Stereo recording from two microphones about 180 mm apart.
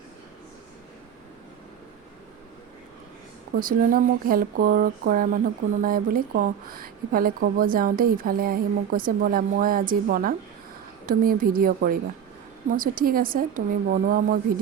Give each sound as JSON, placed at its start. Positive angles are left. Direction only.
{"t": 3.5, "sound": "speech", "side_deg": -50}